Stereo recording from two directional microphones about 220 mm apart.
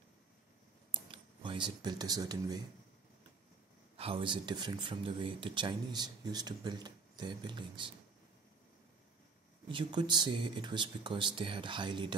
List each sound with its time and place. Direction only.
0.9 s speech: 25° right (ahead or behind)
3.9 s speech: 25° right (ahead or behind)
9.7 s speech: 20° right (ahead or behind)